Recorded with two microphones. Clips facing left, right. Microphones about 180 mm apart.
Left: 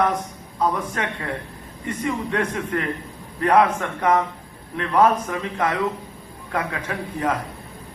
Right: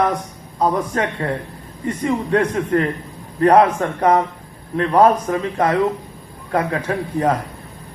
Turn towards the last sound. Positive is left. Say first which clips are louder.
# right 6 dB
turn(degrees=-35)  # may be behind; listen again after turning